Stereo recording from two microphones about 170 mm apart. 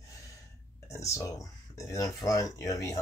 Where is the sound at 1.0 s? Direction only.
20° left (ahead or behind).